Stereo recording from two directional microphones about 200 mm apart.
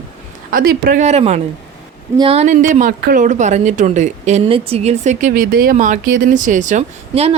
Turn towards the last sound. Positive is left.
turn(degrees=-35)  # may be behind; listen again after turning